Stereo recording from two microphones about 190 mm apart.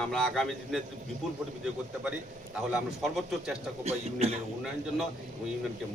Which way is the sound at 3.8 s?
35° right (ahead or behind).